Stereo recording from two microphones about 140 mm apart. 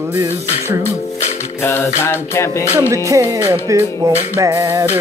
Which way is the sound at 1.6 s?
20° left (ahead or behind).